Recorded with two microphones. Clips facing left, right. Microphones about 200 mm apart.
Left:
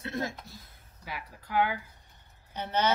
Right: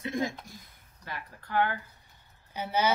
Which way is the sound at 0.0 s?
15° right (ahead or behind).